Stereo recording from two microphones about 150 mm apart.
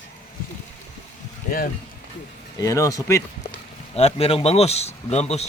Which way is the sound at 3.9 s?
45° left (ahead or behind).